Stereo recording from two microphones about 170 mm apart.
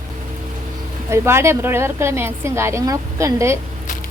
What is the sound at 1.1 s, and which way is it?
A woman's voice, 15° right (ahead or behind).